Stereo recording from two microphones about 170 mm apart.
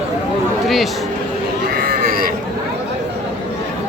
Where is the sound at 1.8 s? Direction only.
60° right (ahead or behind).